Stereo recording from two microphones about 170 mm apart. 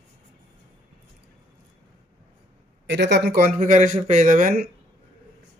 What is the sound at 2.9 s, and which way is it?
Speech, 90° right.